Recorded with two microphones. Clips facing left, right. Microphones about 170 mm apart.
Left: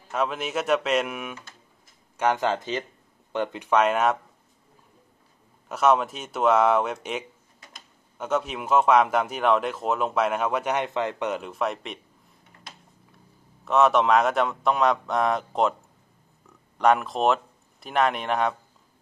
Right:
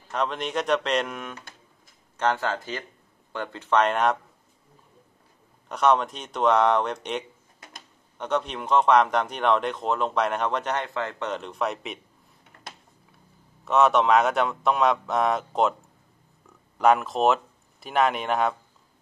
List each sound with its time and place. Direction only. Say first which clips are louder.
0.1 s speech: left 1 dB; 5° left (ahead or behind)
5.7 s speech: left 1 dB; 5° left (ahead or behind)
13.7 s speech: even; centre (ahead or behind)
16.7 s speech: right 1 dB; centre (ahead or behind)